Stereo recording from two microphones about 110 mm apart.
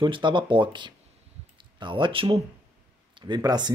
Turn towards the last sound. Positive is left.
turn(degrees=-40)  # may be behind; listen again after turning